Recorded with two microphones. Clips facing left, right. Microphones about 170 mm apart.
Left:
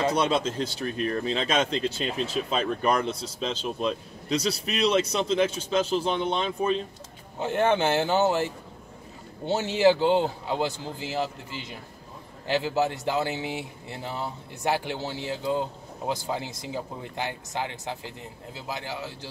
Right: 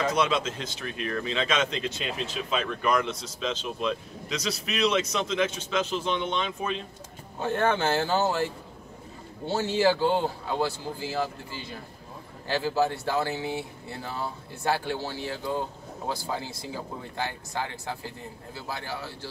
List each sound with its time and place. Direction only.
0.0 s speech: 35° left (ahead or behind)
7.3 s speech: 20° left (ahead or behind)
9.5 s speech: 20° left (ahead or behind)